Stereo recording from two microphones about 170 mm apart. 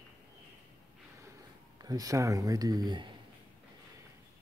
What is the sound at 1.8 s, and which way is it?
Speech, 20° right (ahead or behind).